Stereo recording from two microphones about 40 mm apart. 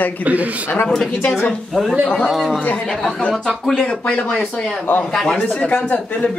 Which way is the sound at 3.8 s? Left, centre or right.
Left.